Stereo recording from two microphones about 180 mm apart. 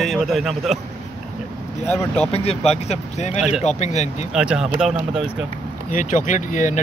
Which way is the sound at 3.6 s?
40° left (ahead or behind).